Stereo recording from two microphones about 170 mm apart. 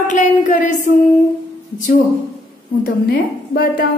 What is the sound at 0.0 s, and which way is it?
A woman's voice, 45° left (ahead or behind).